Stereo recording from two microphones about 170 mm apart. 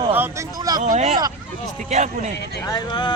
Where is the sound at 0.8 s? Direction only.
40° right (ahead or behind).